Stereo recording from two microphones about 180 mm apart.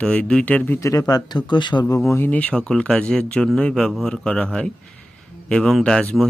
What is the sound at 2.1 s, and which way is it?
Speech, 10° left (ahead or behind).